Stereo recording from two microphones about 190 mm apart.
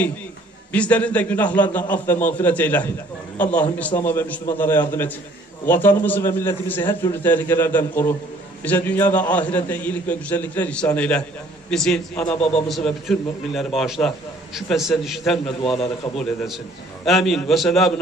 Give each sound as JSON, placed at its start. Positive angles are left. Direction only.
{"t": 0.7, "sound": "a man's voice", "side_deg": 5}
{"t": 15.4, "sound": "a man's voice", "side_deg": 30}
{"t": 16.2, "sound": "a man's voice", "side_deg": 0}